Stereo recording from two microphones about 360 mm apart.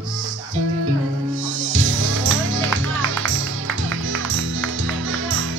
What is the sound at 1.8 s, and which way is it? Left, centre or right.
Music, right.